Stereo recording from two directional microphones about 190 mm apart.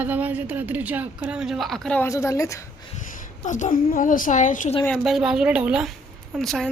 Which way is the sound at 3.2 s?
40° left (ahead or behind).